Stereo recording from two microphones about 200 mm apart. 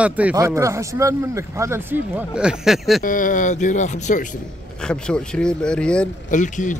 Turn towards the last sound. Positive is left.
turn(degrees=40)  # may be behind; listen again after turning